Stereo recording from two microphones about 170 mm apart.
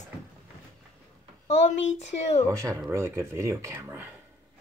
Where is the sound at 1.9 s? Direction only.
45° left (ahead or behind).